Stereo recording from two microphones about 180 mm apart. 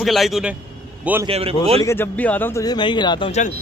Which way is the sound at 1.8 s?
15° left (ahead or behind).